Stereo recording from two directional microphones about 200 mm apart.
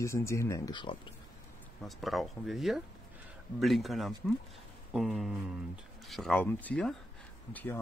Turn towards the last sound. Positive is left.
turn(degrees=10)  # may be behind; listen again after turning